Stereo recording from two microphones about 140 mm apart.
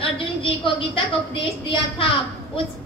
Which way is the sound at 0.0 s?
40° left (ahead or behind).